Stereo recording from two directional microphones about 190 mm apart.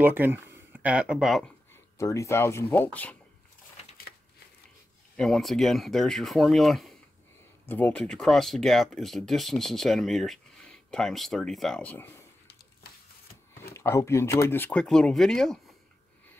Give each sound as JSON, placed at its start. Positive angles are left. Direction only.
{"t": 0.0, "sound": "speech", "side_deg": -10}
{"t": 1.7, "sound": "speech", "side_deg": 15}
{"t": 3.8, "sound": "a sound", "side_deg": 35}
{"t": 5.1, "sound": "speech", "side_deg": 0}
{"t": 13.7, "sound": "speech", "side_deg": 15}